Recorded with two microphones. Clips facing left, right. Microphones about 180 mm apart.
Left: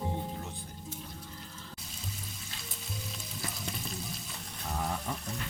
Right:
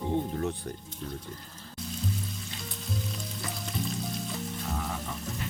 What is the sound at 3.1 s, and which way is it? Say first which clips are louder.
Frying: right 5 dB; centre (ahead or behind).